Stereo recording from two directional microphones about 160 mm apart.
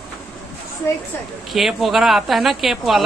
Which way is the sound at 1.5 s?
Centre (ahead or behind).